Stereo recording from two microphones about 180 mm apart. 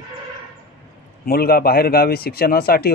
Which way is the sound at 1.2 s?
55° left (ahead or behind).